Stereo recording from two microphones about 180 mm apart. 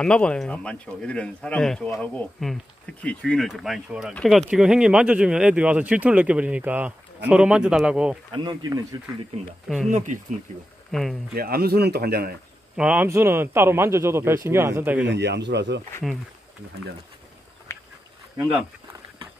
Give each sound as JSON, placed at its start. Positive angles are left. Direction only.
{"t": 0.0, "sound": "speech", "side_deg": 5}
{"t": 8.3, "sound": "speech", "side_deg": -20}
{"t": 9.8, "sound": "speech", "side_deg": -45}
{"t": 10.9, "sound": "speech", "side_deg": 0}
{"t": 11.3, "sound": "speech", "side_deg": -60}
{"t": 12.7, "sound": "a man's voice", "side_deg": -5}
{"t": 15.0, "sound": "speech", "side_deg": -70}
{"t": 18.4, "sound": "a man's voice", "side_deg": -5}